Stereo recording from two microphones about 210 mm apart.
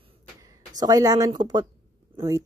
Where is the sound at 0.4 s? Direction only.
15° right (ahead or behind).